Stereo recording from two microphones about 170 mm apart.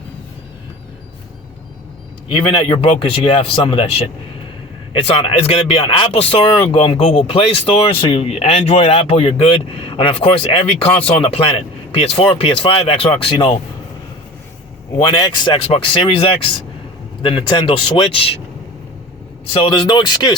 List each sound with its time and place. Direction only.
2.3 s speech: 25° left (ahead or behind)
14.9 s speech: 25° left (ahead or behind)
19.6 s speech: 25° left (ahead or behind)